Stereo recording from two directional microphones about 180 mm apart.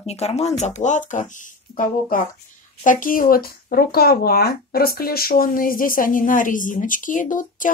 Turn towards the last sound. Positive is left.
turn(degrees=45)  # may be behind; listen again after turning